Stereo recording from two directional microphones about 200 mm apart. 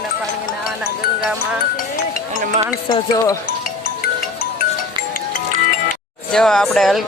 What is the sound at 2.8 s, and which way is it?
Music, 20° left (ahead or behind).